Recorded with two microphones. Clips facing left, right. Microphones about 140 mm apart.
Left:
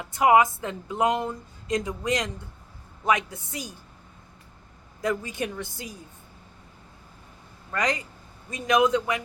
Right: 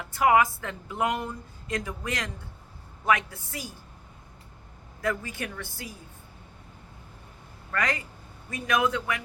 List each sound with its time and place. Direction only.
0.0 s a woman's voice: 20° left (ahead or behind)
4.9 s a woman's voice: 20° left (ahead or behind)
7.7 s a woman's voice: 20° left (ahead or behind)